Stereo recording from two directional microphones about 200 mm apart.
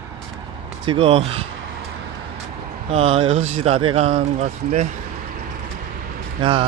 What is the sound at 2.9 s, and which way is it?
Speech, 30° right (ahead or behind).